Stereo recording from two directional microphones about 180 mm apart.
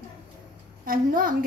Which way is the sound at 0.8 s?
50° right (ahead or behind).